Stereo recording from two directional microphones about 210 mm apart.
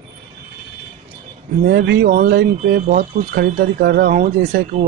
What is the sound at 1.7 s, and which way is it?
Speech, 50° right (ahead or behind).